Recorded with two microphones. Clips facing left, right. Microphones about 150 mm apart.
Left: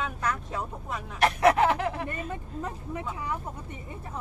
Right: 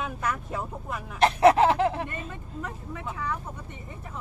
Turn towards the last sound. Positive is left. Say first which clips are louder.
# even
turn(degrees=20)  # may be behind; listen again after turning